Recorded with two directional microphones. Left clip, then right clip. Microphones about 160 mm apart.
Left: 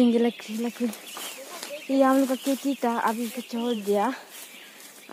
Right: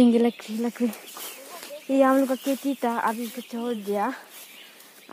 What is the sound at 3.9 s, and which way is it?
Speech, 40° right (ahead or behind).